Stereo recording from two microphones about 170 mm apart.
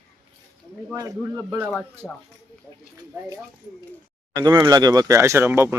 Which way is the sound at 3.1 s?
15° right (ahead or behind).